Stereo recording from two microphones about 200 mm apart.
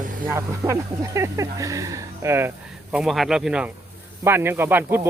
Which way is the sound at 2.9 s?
Centre (ahead or behind).